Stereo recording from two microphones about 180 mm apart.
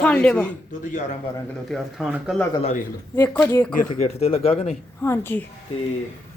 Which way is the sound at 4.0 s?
35° left (ahead or behind).